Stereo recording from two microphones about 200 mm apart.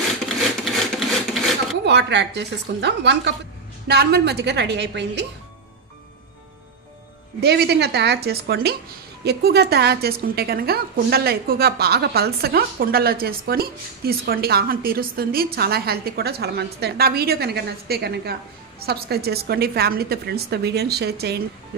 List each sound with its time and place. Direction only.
0.9 s a sound: centre (ahead or behind)
1.9 s speech: 60° right (ahead or behind)
7.3 s a woman's voice: 55° right (ahead or behind)